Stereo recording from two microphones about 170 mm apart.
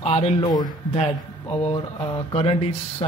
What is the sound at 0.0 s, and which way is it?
A man's voice, 40° left (ahead or behind).